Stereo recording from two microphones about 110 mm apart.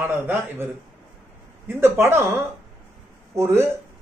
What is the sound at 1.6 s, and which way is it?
A man's voice, 20° right (ahead or behind).